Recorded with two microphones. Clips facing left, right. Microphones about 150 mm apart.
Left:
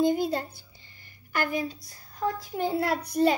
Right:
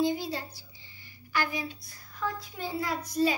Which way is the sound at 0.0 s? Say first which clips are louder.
Left 5 dB; 50° left (ahead or behind).